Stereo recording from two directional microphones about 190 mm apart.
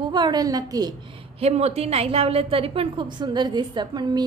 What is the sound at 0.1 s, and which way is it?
Speech, 20° right (ahead or behind).